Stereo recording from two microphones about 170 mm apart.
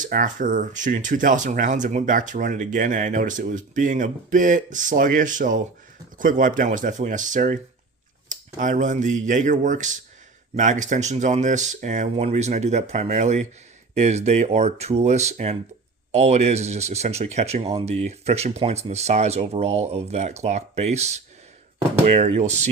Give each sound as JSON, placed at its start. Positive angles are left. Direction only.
{"t": 0.0, "sound": "speech", "side_deg": -50}